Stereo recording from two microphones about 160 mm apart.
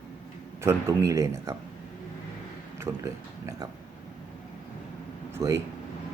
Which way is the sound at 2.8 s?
20° right (ahead or behind).